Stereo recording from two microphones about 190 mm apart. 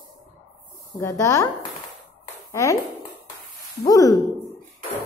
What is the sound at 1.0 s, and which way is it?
A woman's voice, 15° left (ahead or behind).